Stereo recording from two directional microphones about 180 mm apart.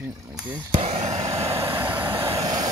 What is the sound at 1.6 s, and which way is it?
Vehicle, 10° right (ahead or behind).